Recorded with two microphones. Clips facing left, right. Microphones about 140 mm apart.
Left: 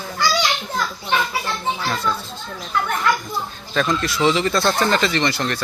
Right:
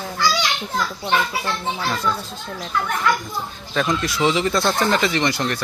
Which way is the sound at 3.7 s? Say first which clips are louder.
Left 1 dB; 15° right (ahead or behind).